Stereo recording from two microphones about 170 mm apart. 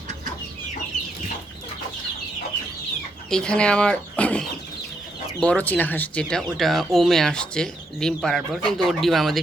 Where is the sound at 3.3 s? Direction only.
5° left (ahead or behind).